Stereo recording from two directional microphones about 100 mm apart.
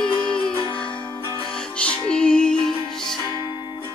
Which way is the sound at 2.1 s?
10° left (ahead or behind).